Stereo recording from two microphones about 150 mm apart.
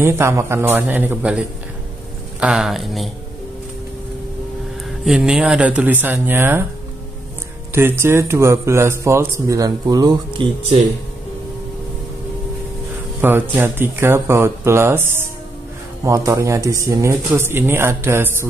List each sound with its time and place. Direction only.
0.0 s speech: 15° right (ahead or behind)
2.4 s speech: 5° right (ahead or behind)
5.0 s speech: 5° right (ahead or behind)
7.7 s speech: 15° right (ahead or behind)
13.2 s speech: 15° right (ahead or behind)